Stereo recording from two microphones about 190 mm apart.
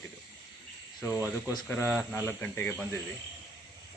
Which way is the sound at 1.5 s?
10° left (ahead or behind).